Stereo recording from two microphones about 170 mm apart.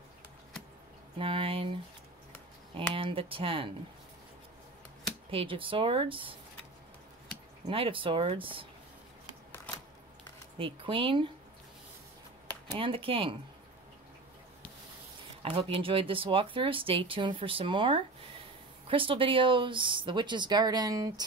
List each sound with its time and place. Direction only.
1.1 s speech: 30° right (ahead or behind)
2.9 s speech: 30° right (ahead or behind)
5.3 s speech: 30° right (ahead or behind)
7.6 s speech: 30° right (ahead or behind)
10.6 s speech: 30° right (ahead or behind)
12.7 s speech: 30° right (ahead or behind)
15.4 s speech: 30° right (ahead or behind)